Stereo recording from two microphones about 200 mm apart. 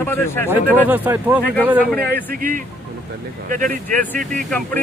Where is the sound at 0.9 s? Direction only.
10° right (ahead or behind).